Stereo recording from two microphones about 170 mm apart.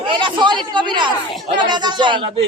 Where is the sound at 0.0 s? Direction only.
30° right (ahead or behind).